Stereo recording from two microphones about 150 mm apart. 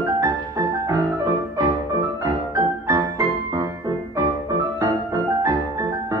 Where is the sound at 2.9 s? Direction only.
20° right (ahead or behind).